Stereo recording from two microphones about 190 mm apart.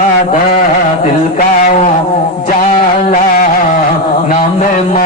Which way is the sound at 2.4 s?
40° left (ahead or behind).